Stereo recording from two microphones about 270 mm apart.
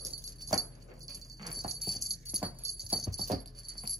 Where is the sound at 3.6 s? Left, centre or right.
Centre.